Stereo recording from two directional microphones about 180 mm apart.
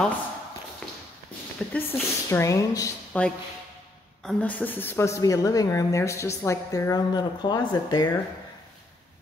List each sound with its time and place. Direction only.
0.8 s walk: 5° left (ahead or behind)
1.7 s a woman's voice: 10° left (ahead or behind)
3.1 s a woman's voice: 5° left (ahead or behind)